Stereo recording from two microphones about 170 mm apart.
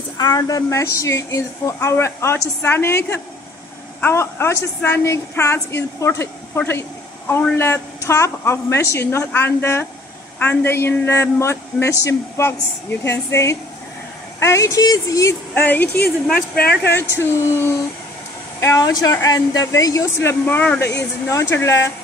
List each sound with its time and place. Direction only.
0.2 s a woman's voice: 20° left (ahead or behind)